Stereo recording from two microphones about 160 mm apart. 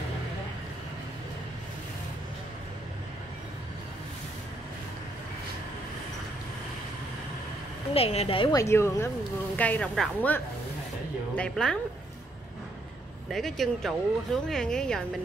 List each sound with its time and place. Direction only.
7.9 s a woman's voice: 40° left (ahead or behind)
8.5 s speech: 15° left (ahead or behind)
13.3 s speech: centre (ahead or behind)